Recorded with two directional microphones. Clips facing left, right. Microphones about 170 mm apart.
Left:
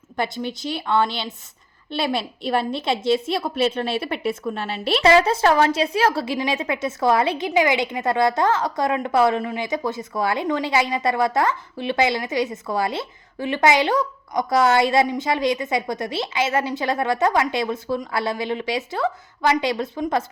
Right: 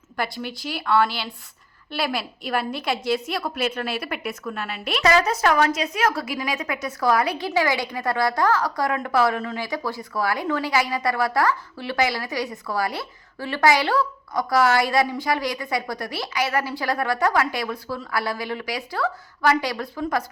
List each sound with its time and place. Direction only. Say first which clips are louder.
0.2 s a woman's voice: left 3 dB; 20° left (ahead or behind)